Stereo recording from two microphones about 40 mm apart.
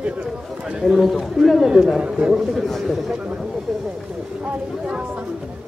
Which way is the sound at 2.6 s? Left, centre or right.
Centre.